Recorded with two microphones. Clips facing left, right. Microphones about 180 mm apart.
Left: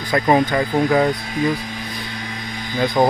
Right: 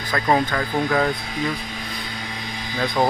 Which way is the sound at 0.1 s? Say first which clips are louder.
Left 4 dB; 15° left (ahead or behind).